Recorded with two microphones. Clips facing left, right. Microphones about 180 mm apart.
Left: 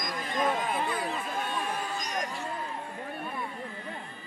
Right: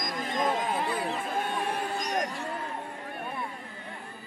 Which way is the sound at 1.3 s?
55° right (ahead or behind).